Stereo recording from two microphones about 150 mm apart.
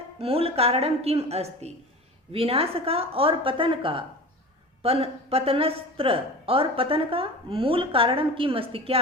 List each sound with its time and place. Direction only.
0.2 s speech: 40° right (ahead or behind)